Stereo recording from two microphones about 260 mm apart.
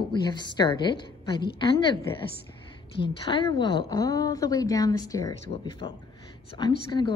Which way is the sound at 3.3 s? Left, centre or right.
Centre.